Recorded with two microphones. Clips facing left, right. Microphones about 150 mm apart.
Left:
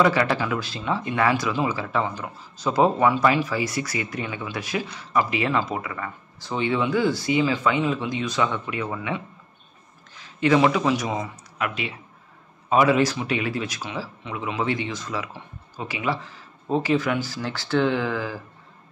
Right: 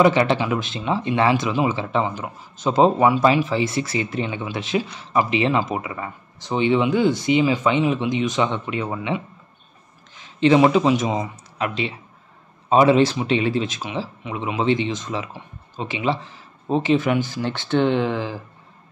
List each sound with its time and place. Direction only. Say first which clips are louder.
0.0 s speech: right 4 dB; 20° right (ahead or behind)